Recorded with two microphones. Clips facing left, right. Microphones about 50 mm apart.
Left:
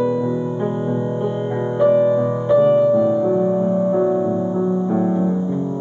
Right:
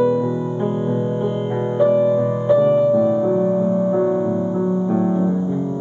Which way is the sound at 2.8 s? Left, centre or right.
Centre.